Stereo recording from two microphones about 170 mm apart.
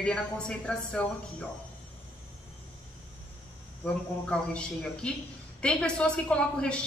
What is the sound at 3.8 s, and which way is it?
A man's voice, 5° left (ahead or behind).